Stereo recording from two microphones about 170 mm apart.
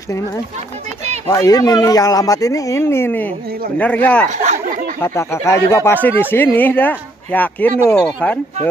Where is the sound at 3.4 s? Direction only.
65° right (ahead or behind).